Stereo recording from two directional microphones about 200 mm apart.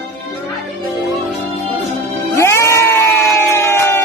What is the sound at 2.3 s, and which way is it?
Music, 15° left (ahead or behind).